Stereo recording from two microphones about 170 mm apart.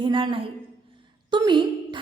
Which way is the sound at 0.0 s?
30° right (ahead or behind).